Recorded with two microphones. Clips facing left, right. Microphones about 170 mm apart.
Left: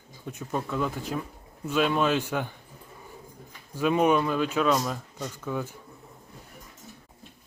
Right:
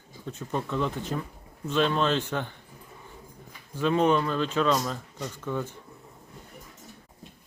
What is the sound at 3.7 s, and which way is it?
Speech, 10° left (ahead or behind).